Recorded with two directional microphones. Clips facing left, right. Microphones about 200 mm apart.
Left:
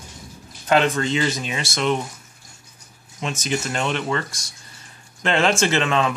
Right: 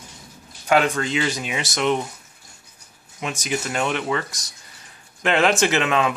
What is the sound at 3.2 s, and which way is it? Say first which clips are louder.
Speech: left 1 dB; 10° right (ahead or behind).